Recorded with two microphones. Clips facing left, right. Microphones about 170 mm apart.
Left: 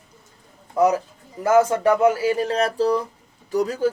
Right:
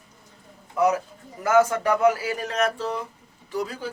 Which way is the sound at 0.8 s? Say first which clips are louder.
Left 3 dB; 35° left (ahead or behind).